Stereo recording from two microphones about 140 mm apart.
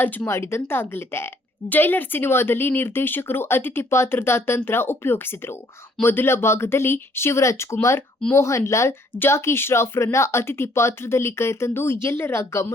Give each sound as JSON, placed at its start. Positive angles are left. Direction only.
{"t": 0.0, "sound": "speech", "side_deg": 15}